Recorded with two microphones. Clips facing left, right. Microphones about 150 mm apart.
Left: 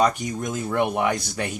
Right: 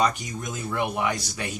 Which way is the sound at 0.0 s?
50° left (ahead or behind).